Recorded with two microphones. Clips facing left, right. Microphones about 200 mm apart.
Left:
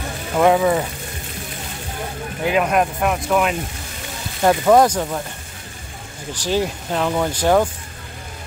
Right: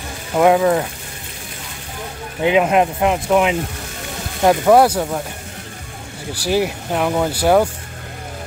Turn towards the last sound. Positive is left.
turn(degrees=-10)  # may be behind; listen again after turning